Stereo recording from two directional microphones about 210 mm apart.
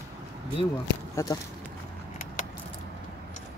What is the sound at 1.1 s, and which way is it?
Speech, 15° left (ahead or behind).